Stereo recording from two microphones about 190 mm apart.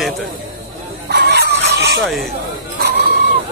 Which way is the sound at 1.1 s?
60° right (ahead or behind).